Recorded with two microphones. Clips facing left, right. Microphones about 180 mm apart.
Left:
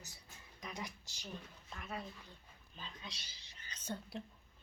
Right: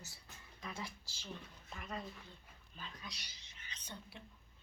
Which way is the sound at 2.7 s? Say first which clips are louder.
Even; 25° left (ahead or behind).